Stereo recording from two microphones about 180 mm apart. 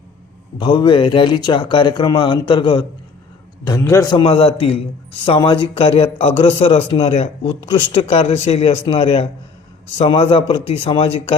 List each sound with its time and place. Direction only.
0.6 s speech: 25° left (ahead or behind)
3.7 s a man's voice: 15° left (ahead or behind); by 11.3 s 30° left (ahead or behind)